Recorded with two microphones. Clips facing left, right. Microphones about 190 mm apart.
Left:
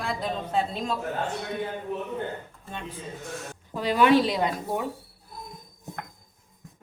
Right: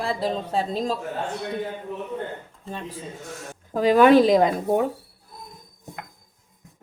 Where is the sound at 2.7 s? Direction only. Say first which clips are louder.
Right 3 dB; 35° right (ahead or behind).